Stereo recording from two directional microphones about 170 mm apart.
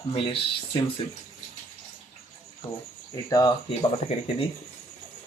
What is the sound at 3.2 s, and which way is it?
Speech, 20° left (ahead or behind).